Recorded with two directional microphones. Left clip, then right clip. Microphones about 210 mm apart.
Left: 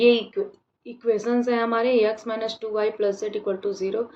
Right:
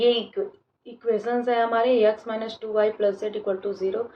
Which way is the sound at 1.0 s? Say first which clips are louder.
Left 1 dB; 55° left (ahead or behind).